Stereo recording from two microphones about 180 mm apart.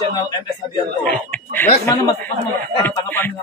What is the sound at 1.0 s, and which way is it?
Speech, 10° left (ahead or behind).